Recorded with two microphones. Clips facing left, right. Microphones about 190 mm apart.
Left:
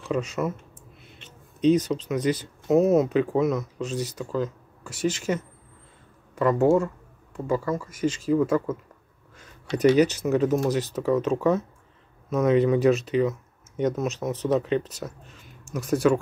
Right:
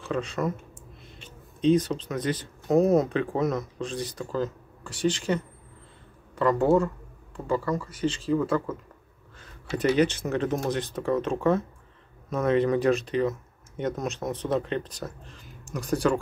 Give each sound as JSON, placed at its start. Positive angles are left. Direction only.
{"t": 0.1, "sound": "speech", "side_deg": 10}
{"t": 1.7, "sound": "speech", "side_deg": 10}
{"t": 6.3, "sound": "speech", "side_deg": 10}
{"t": 8.0, "sound": "speech", "side_deg": -30}
{"t": 8.3, "sound": "speech", "side_deg": 10}
{"t": 9.8, "sound": "speech", "side_deg": 10}